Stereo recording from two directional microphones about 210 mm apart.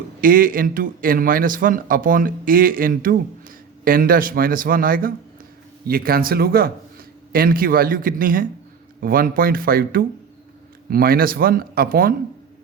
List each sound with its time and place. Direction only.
0.2 s speech: 40° right (ahead or behind)